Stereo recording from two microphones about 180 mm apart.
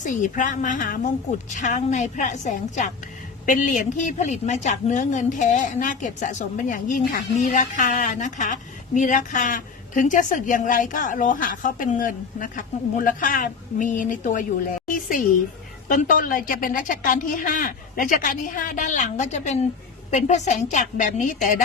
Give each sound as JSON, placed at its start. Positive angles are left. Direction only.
{"t": 0.0, "sound": "a woman's voice", "side_deg": 45}